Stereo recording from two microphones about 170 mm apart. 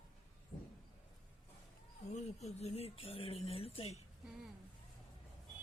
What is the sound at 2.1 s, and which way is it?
Speech, 40° left (ahead or behind).